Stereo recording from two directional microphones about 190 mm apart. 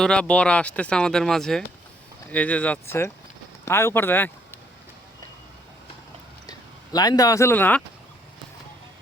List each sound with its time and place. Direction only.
0.0 s speech: 5° left (ahead or behind)
6.5 s speech: 20° left (ahead or behind)